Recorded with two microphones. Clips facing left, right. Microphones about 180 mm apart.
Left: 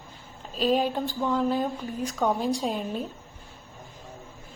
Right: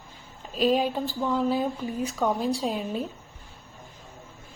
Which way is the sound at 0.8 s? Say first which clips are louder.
Even; 10° right (ahead or behind).